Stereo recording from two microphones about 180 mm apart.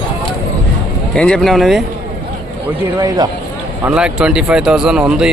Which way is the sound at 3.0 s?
20° right (ahead or behind).